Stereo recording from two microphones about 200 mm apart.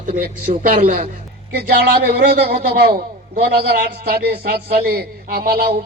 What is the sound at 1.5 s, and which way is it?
A man's voice, 55° right (ahead or behind).